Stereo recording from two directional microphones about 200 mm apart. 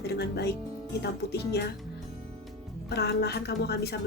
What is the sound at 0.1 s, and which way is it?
Speech, 55° left (ahead or behind).